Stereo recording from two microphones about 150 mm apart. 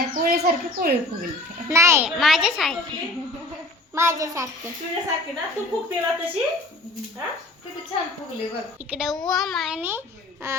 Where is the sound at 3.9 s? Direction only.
20° right (ahead or behind).